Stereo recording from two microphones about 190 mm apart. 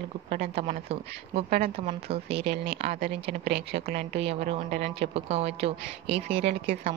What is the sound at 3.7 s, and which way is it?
Speech, 35° right (ahead or behind).